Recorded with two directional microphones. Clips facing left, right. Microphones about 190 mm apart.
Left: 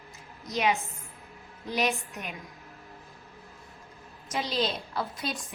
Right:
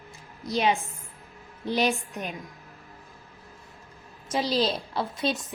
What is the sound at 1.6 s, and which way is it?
Speech, 30° right (ahead or behind).